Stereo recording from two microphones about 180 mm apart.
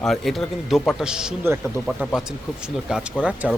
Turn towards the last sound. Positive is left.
turn(degrees=-5)  # may be behind; listen again after turning